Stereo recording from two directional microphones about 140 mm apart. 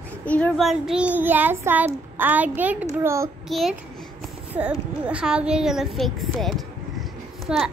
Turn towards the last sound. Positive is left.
turn(degrees=-5)  # may be behind; listen again after turning